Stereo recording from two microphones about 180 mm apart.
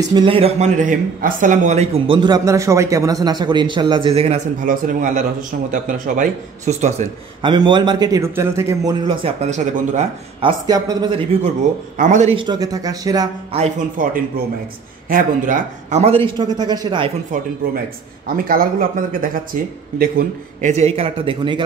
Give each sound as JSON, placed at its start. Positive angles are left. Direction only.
{"t": 0.1, "sound": "speech", "side_deg": -30}
{"t": 4.6, "sound": "speech", "side_deg": -45}
{"t": 7.4, "sound": "speech", "side_deg": -25}
{"t": 9.4, "sound": "speech", "side_deg": -40}
{"t": 10.7, "sound": "speech", "side_deg": -20}
{"t": 12.0, "sound": "speech", "side_deg": -40}
{"t": 13.9, "sound": "speech", "side_deg": -50}
{"t": 18.3, "sound": "speech", "side_deg": -55}